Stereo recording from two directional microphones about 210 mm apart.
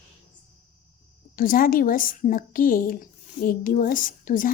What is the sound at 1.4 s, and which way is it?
A woman's voice, 45° left (ahead or behind).